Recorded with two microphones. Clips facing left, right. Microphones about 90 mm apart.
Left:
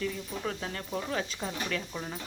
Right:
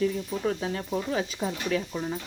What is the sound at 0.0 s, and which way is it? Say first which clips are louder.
Speech: right 7 dB; 15° right (ahead or behind).